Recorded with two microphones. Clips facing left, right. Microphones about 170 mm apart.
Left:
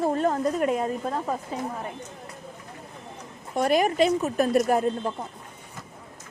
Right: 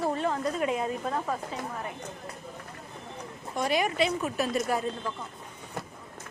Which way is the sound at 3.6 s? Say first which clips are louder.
Left 5 dB; 50° left (ahead or behind).